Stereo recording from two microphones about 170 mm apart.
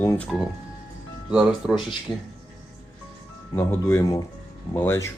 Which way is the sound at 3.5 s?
15° left (ahead or behind).